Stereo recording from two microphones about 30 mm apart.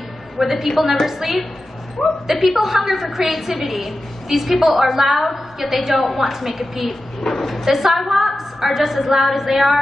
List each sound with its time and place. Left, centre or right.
0.4 s a woman's voice: centre
7.3 s dog: centre
7.6 s a woman's voice: centre